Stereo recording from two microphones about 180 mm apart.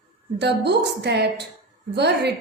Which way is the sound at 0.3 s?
70° right (ahead or behind).